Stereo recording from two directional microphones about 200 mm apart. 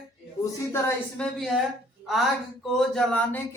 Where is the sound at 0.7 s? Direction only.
10° left (ahead or behind).